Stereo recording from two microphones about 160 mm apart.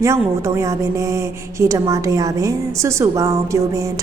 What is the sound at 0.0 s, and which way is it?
A woman's voice, 20° right (ahead or behind).